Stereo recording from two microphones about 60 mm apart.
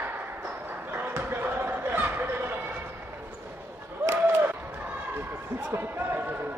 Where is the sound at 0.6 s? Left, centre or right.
Right.